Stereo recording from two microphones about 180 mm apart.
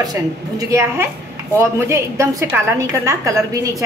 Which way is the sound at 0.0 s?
20° right (ahead or behind).